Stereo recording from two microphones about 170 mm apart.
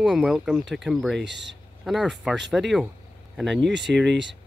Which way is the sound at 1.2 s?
90° right.